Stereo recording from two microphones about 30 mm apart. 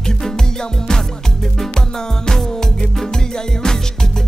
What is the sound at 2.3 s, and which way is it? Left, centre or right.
Music, centre.